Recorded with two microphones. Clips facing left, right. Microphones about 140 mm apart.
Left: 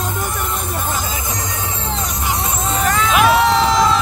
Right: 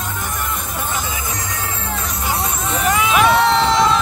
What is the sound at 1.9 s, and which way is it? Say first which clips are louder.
Music: left 2 dB; 20° left (ahead or behind).